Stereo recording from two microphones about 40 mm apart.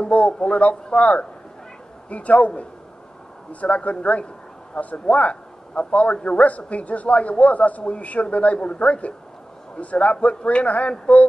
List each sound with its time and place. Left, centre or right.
0.0 s a man's voice: left
0.3 s a man's voice: left
3.6 s a man's voice: left